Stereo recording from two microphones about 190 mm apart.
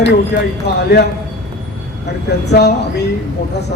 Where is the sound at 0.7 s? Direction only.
60° left (ahead or behind).